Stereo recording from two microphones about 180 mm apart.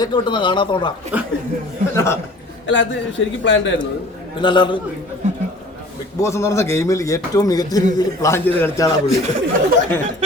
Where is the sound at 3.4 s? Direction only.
90° left.